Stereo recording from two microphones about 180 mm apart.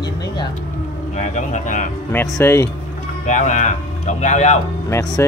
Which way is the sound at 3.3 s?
40° left (ahead or behind).